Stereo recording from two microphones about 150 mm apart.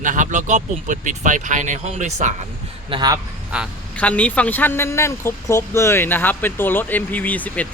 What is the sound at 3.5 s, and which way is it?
Speech, 5° right (ahead or behind).